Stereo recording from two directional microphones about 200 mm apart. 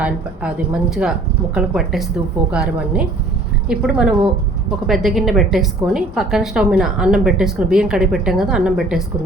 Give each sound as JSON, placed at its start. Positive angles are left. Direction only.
{"t": 0.0, "sound": "a woman's voice", "side_deg": -5}